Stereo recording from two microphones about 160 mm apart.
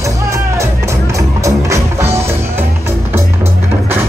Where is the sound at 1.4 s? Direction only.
20° right (ahead or behind).